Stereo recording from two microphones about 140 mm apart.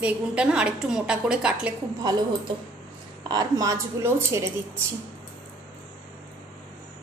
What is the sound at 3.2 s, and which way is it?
A woman's voice, 25° right (ahead or behind).